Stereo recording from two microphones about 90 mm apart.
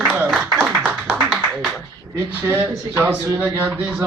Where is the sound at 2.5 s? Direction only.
25° right (ahead or behind).